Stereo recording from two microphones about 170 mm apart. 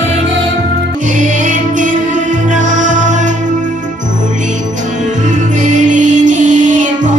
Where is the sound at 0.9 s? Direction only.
45° right (ahead or behind).